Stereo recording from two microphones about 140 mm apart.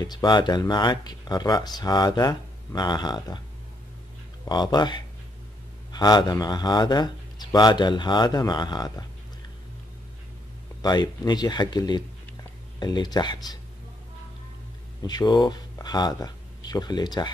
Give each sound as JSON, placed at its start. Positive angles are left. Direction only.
{"t": 0.0, "sound": "speech", "side_deg": 30}
{"t": 4.5, "sound": "speech", "side_deg": 30}
{"t": 10.8, "sound": "speech", "side_deg": 30}
{"t": 15.0, "sound": "speech", "side_deg": 30}